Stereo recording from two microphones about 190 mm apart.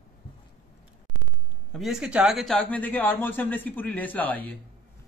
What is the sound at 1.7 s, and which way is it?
Speech, centre (ahead or behind).